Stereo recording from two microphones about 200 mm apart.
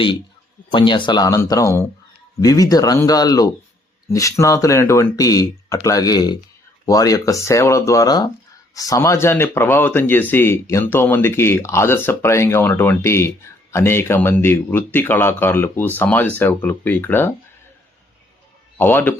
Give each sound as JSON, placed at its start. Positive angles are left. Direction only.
{"t": 0.7, "sound": "speech", "side_deg": 25}
{"t": 18.8, "sound": "speech", "side_deg": 10}